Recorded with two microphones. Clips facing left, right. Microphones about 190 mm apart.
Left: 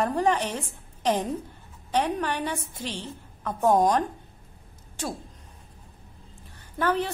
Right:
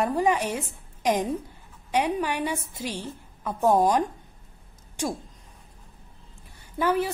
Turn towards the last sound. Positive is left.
turn(degrees=-10)  # may be behind; listen again after turning